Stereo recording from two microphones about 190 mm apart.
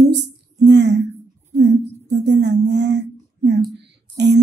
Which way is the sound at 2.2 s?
65° right (ahead or behind).